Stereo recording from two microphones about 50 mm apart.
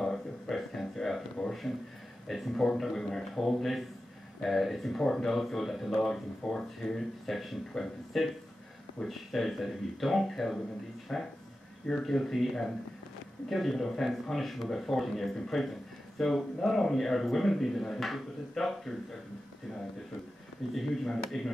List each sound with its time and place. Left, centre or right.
0.0 s a sound: centre
2.2 s speech: centre
11.1 s speech: centre
11.9 s speech: centre
20.7 s speech: centre